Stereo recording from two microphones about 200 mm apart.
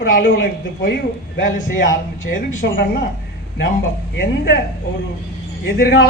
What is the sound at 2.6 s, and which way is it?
Speech, 50° left (ahead or behind).